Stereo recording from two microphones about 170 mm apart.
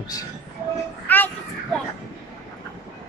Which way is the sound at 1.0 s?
10° left (ahead or behind).